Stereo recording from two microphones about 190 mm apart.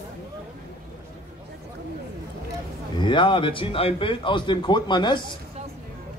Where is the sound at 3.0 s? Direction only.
25° left (ahead or behind).